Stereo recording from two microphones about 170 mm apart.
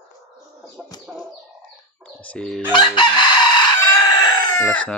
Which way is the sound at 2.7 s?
30° left (ahead or behind).